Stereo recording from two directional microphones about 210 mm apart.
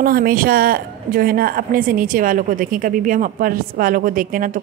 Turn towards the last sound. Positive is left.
turn(degrees=-40)  # may be behind; listen again after turning